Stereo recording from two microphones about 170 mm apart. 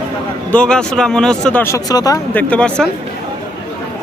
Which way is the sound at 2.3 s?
5° left (ahead or behind).